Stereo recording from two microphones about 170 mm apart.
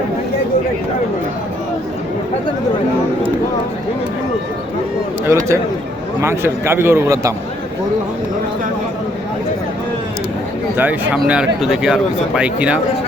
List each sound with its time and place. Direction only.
5.2 s a man's voice: 15° right (ahead or behind)
10.8 s a man's voice: 10° right (ahead or behind)